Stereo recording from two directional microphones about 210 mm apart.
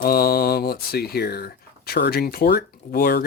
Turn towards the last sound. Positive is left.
turn(degrees=45)  # may be behind; listen again after turning